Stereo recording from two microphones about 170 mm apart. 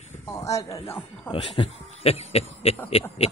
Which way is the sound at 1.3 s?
35° left (ahead or behind).